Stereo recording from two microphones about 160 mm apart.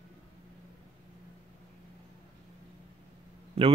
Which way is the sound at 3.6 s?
40° right (ahead or behind).